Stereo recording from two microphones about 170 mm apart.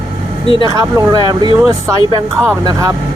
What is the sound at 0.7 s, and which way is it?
Speech, 20° right (ahead or behind).